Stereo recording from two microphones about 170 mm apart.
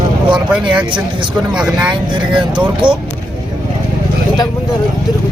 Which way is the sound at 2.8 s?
25° right (ahead or behind).